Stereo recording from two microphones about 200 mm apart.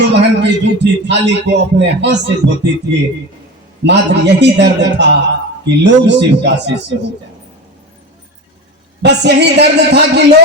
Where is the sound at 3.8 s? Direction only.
60° right (ahead or behind).